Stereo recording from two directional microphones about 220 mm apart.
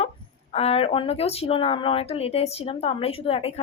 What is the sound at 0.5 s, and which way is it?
Speech, 25° left (ahead or behind).